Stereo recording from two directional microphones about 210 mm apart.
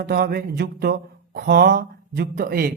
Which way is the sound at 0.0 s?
45° right (ahead or behind).